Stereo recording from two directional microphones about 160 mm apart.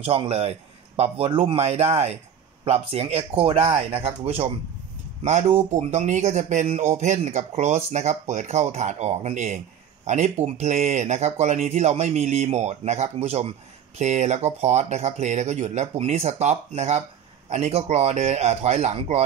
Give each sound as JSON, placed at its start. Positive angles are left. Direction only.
{"t": 0.0, "sound": "a man's voice", "side_deg": -35}